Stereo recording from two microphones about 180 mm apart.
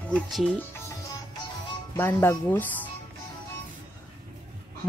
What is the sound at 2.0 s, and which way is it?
Speech, 15° left (ahead or behind).